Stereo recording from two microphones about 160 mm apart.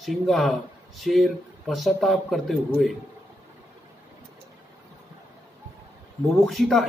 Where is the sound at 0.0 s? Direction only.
Centre (ahead or behind).